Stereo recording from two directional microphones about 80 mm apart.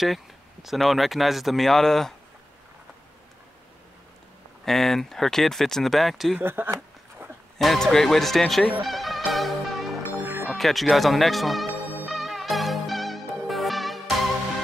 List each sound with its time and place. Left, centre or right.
0.0 s speech: centre
4.6 s speech: centre
6.4 s speech: right
7.5 s speech: centre
8.8 s music: centre
10.4 s speech: centre
12.1 s music: centre